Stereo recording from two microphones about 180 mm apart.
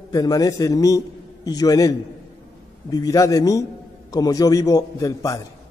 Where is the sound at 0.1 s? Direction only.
20° left (ahead or behind).